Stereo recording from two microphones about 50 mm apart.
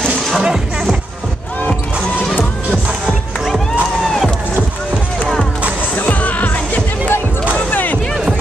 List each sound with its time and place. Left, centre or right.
2.3 s music: left
5.9 s music: left
7.5 s a sound: left